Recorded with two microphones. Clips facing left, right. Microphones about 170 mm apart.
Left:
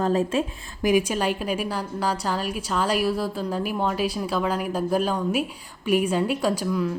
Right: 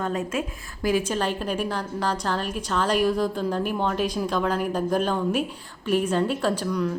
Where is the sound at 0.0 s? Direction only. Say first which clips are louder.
Left 5 dB; 30° left (ahead or behind).